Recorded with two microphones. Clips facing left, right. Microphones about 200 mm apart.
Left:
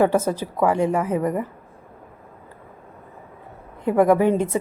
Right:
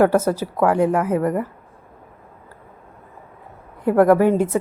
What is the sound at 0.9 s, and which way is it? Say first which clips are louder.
Speech: right 2 dB; 10° right (ahead or behind).